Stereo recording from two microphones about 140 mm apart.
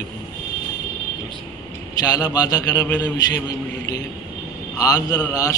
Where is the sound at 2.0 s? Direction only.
25° left (ahead or behind).